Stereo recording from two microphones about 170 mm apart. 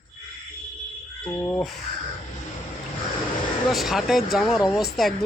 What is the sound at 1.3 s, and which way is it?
Speech, 15° left (ahead or behind).